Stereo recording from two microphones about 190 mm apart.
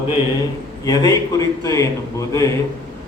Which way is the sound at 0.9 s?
20° left (ahead or behind).